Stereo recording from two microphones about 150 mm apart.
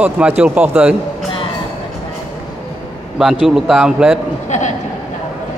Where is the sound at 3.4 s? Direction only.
Centre (ahead or behind).